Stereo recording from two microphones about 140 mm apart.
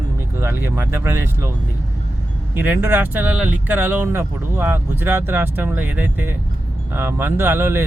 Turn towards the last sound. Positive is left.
turn(degrees=-15)  # may be behind; listen again after turning